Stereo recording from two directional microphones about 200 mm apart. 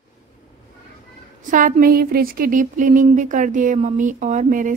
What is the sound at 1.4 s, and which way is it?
Speech, 40° right (ahead or behind).